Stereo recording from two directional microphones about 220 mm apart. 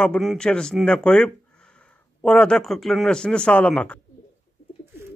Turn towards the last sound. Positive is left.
turn(degrees=5)  # may be behind; listen again after turning